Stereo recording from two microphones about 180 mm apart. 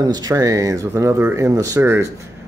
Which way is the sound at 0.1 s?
20° right (ahead or behind).